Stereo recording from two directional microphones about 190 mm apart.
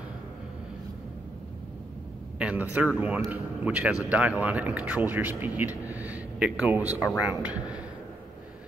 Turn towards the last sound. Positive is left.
turn(degrees=-5)  # may be behind; listen again after turning